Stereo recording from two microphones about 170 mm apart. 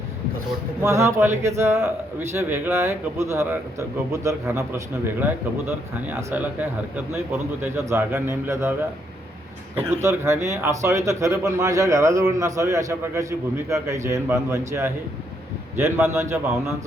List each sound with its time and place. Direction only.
0.8 s a man's voice: 15° right (ahead or behind)
9.7 s a man's voice: 15° right (ahead or behind)